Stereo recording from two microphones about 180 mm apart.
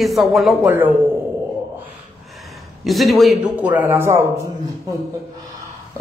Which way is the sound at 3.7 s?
10° right (ahead or behind).